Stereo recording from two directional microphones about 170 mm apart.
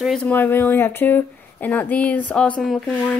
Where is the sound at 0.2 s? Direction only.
10° left (ahead or behind).